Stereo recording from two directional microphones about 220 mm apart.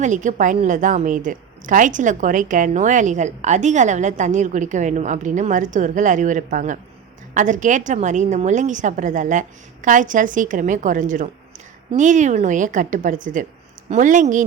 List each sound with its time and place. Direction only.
0.0 s a woman's voice: 35° right (ahead or behind)